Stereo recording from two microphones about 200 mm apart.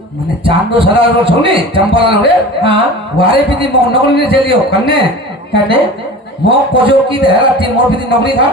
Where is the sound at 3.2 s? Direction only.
25° right (ahead or behind).